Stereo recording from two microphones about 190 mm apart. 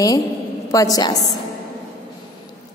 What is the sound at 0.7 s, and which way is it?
Speech, 15° left (ahead or behind).